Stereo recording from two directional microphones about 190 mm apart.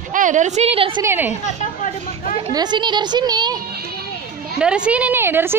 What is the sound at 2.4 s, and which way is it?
Speech, 25° right (ahead or behind).